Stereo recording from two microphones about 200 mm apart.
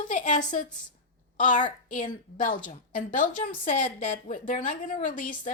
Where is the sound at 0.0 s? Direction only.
40° left (ahead or behind).